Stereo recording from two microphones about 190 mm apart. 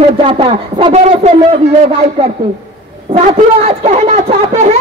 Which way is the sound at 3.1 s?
35° right (ahead or behind).